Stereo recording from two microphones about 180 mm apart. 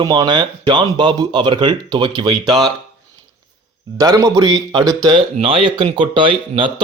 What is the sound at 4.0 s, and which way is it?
A man's voice, 20° right (ahead or behind).